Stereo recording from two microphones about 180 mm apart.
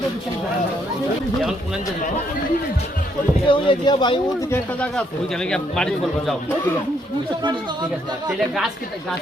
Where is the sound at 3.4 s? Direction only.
30° left (ahead or behind).